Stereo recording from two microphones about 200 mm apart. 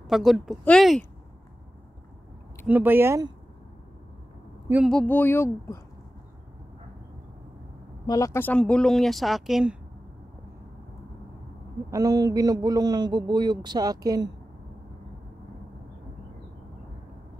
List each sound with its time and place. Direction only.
0.1 s speech: centre (ahead or behind)
2.6 s speech: 10° right (ahead or behind)
4.8 s speech: 5° left (ahead or behind)
8.1 s speech: 15° left (ahead or behind); by 9.8 s centre (ahead or behind)
11.9 s a man's voice: 20° right (ahead or behind)